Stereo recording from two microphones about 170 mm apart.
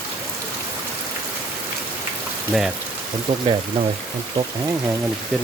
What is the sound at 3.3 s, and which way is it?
Speech, 40° right (ahead or behind).